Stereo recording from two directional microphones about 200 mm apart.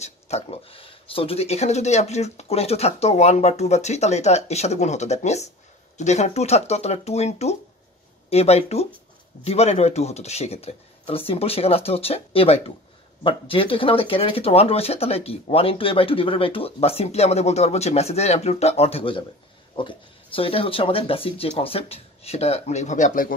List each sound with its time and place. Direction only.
0.0 s speech: 30° left (ahead or behind)